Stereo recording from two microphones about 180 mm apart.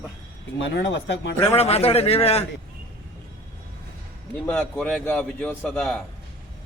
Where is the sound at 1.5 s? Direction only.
35° left (ahead or behind).